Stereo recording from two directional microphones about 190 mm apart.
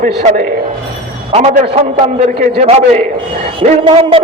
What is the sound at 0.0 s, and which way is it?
Speech, 45° right (ahead or behind).